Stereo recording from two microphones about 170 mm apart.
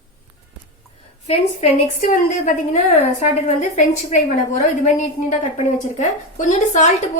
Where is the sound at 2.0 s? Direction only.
45° left (ahead or behind).